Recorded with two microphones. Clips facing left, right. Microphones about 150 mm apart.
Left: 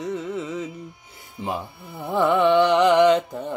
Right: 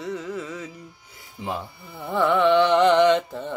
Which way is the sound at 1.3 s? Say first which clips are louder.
Left 2 dB; 20° left (ahead or behind).